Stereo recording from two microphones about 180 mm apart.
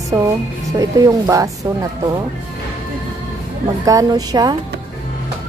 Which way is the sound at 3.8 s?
20° right (ahead or behind).